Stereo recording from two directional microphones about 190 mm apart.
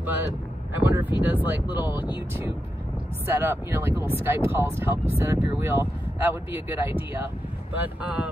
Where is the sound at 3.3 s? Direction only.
10° right (ahead or behind).